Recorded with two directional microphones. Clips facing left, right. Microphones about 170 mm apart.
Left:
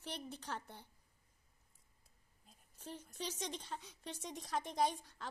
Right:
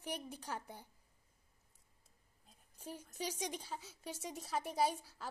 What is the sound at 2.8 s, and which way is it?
A woman's voice, 10° right (ahead or behind).